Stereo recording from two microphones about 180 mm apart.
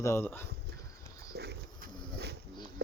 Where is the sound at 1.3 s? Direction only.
65° right (ahead or behind).